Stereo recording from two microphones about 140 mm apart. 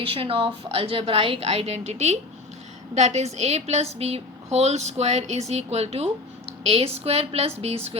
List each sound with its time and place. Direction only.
0.0 s speech: 40° right (ahead or behind)